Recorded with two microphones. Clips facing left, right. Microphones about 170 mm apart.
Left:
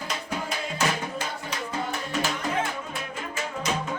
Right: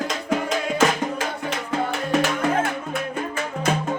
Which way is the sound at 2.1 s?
60° right (ahead or behind).